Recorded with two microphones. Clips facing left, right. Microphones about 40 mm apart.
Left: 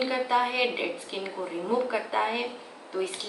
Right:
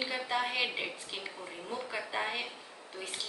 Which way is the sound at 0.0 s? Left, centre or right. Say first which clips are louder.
Left 8 dB; centre.